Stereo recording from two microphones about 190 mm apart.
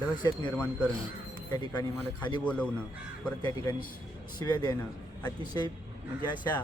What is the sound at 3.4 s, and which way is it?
A man's voice, 20° left (ahead or behind).